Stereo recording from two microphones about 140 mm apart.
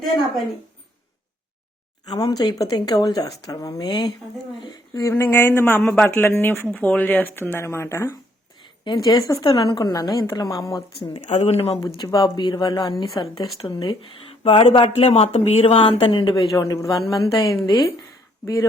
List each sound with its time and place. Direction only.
0.0 s a woman's voice: centre (ahead or behind)
2.0 s a woman's voice: 30° left (ahead or behind)
4.9 s speech: 20° left (ahead or behind)
8.8 s a woman's voice: 30° left (ahead or behind)
11.3 s speech: 50° left (ahead or behind)
12.0 s a woman's voice: 25° left (ahead or behind)